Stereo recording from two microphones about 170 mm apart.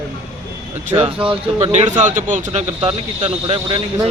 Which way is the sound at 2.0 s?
50° right (ahead or behind).